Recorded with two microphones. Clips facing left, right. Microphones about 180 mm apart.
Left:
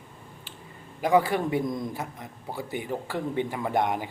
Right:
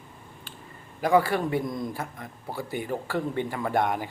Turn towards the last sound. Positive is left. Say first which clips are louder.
# even
turn(degrees=20)  # may be behind; listen again after turning